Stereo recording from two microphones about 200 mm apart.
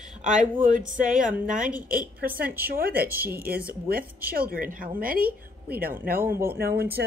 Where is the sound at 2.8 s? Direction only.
50° right (ahead or behind).